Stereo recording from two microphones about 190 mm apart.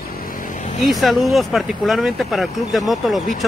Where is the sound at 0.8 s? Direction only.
Centre (ahead or behind).